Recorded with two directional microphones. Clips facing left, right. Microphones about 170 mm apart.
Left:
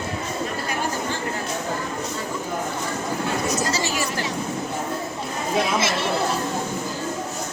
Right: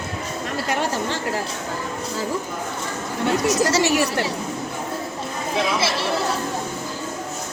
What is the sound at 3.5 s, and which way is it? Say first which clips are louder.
Speech: right 6 dB; 75° right (ahead or behind).